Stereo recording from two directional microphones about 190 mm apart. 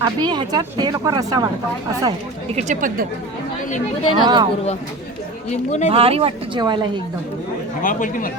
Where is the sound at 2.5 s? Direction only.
35° right (ahead or behind).